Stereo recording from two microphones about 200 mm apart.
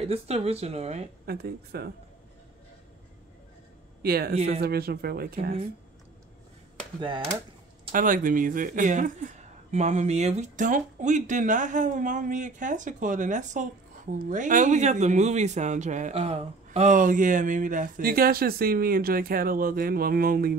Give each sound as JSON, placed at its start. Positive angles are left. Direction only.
{"t": 0.0, "sound": "a man's voice", "side_deg": -30}
{"t": 1.2, "sound": "speech", "side_deg": -50}
{"t": 4.0, "sound": "speech", "side_deg": -50}
{"t": 7.9, "sound": "a man's voice", "side_deg": -40}